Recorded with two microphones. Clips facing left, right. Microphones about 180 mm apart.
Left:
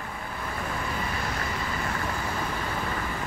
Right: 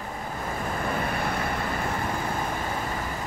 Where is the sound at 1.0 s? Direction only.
55° right (ahead or behind).